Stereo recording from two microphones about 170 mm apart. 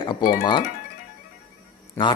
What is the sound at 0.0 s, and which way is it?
Speech, 25° left (ahead or behind).